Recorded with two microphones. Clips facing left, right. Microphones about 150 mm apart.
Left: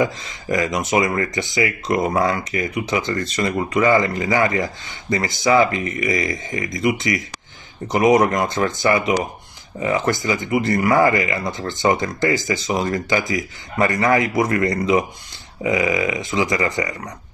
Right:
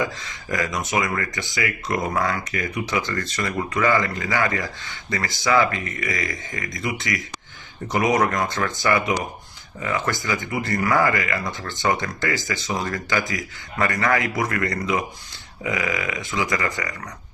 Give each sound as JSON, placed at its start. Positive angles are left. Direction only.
{"t": 0.0, "sound": "speech", "side_deg": 20}